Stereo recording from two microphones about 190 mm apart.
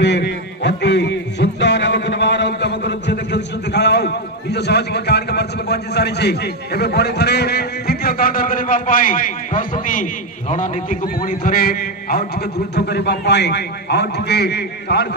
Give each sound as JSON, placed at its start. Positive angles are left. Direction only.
{"t": 0.0, "sound": "a man's voice", "side_deg": 65}